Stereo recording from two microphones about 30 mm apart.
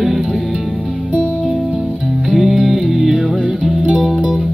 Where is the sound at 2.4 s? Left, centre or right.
Centre.